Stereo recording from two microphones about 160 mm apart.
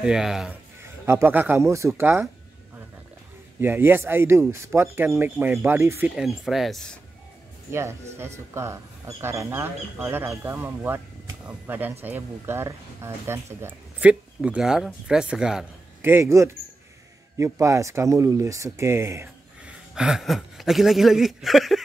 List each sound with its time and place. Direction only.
0.0 s speech: 5° right (ahead or behind)
1.0 s speech: 15° right (ahead or behind)
3.6 s speech: 15° right (ahead or behind); by 7.0 s 5° left (ahead or behind)
7.7 s speech: 15° right (ahead or behind)